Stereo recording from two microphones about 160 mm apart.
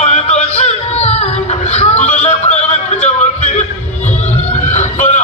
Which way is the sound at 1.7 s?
40° left (ahead or behind).